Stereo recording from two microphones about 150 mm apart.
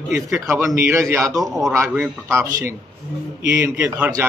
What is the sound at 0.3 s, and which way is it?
Speech, 20° right (ahead or behind).